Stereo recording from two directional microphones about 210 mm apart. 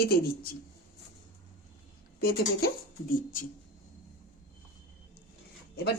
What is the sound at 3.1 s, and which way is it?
Speech, 40° left (ahead or behind).